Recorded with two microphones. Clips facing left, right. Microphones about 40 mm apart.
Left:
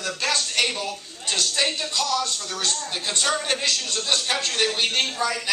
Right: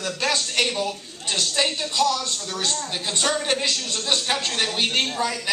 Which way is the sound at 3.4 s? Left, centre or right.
Centre.